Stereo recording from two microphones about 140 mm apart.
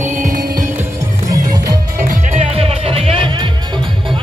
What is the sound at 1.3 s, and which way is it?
Music, 25° right (ahead or behind).